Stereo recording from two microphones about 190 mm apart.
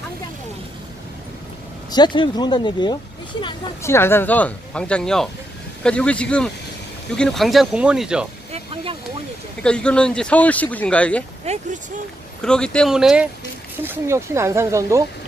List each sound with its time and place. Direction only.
1.9 s speech: 25° left (ahead or behind)
3.8 s speech: 15° left (ahead or behind); by 8.3 s 5° right (ahead or behind)
9.6 s speech: 5° left (ahead or behind)
11.4 s speech: 35° right (ahead or behind)
12.4 s speech: 5° left (ahead or behind)
13.8 s speech: 15° right (ahead or behind)